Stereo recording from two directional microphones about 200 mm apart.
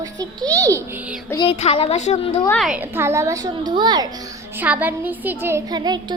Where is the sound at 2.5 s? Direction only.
Centre (ahead or behind); by 4.1 s 20° right (ahead or behind).